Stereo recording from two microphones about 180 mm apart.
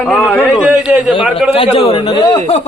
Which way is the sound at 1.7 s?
30° left (ahead or behind).